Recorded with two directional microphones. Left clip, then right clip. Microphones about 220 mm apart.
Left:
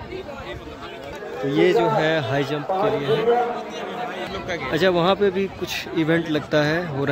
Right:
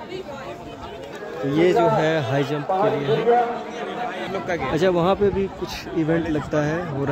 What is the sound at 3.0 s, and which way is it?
Speech, 35° left (ahead or behind).